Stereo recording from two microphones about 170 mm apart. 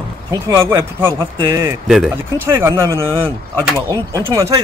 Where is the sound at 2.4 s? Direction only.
15° right (ahead or behind).